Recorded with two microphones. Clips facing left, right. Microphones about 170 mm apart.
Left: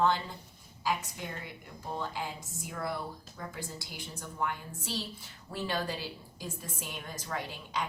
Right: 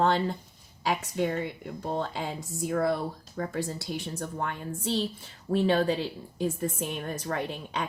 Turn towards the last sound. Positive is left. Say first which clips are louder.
# right 4 dB
turn(degrees=-65)  # may be behind; listen again after turning